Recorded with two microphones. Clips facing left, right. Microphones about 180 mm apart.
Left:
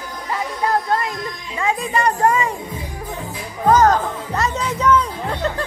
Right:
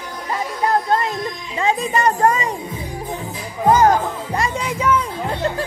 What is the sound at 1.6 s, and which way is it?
Speech, 20° right (ahead or behind).